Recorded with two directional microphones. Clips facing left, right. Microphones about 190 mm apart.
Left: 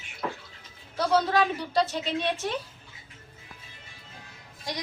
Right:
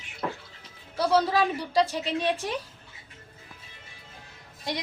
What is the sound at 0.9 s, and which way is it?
A woman's voice, 10° right (ahead or behind).